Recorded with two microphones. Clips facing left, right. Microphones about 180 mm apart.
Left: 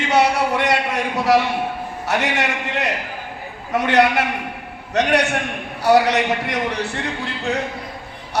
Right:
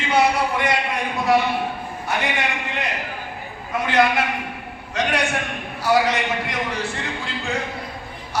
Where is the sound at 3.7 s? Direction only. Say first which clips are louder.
Left 3 dB; 70° left (ahead or behind).